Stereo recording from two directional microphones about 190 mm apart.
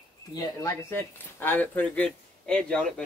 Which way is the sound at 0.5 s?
15° left (ahead or behind).